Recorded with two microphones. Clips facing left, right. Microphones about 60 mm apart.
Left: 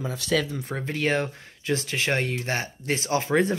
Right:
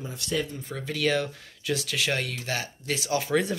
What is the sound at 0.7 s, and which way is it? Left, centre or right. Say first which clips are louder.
Speech: left 1 dB; left.